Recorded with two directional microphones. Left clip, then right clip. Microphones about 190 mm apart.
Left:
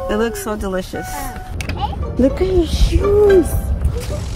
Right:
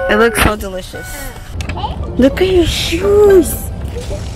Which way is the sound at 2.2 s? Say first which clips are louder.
Right 5 dB; centre (ahead or behind).